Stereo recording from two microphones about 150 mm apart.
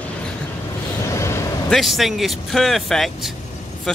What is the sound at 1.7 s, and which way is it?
Speech, centre (ahead or behind).